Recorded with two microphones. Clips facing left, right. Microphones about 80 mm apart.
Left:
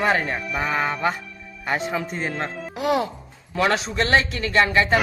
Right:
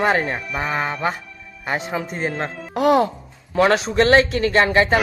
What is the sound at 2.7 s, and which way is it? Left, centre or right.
Speech, right.